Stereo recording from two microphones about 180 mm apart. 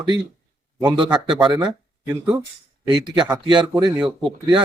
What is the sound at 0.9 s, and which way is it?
Speech, 25° right (ahead or behind).